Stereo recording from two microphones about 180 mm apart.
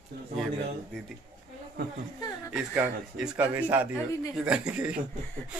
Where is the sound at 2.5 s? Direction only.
5° right (ahead or behind).